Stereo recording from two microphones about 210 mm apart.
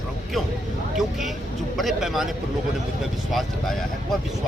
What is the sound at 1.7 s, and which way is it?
Speech, centre (ahead or behind).